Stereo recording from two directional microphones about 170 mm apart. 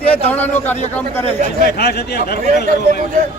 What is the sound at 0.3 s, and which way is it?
Speech, 10° left (ahead or behind).